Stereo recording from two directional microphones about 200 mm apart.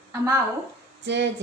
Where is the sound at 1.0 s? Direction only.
60° right (ahead or behind).